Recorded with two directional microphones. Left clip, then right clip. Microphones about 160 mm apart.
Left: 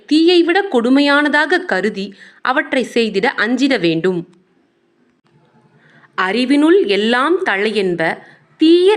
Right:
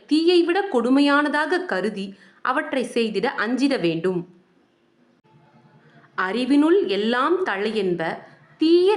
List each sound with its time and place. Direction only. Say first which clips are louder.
0.0 s a woman's voice: left 6 dB; 25° left (ahead or behind)
5.9 s a woman's voice: left 7 dB; 25° left (ahead or behind)